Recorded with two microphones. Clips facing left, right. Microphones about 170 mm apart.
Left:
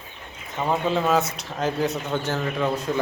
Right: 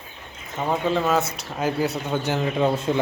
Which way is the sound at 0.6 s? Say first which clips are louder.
Even; centre (ahead or behind).